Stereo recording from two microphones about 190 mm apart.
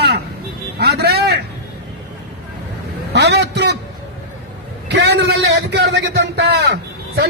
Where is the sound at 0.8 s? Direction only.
60° right (ahead or behind).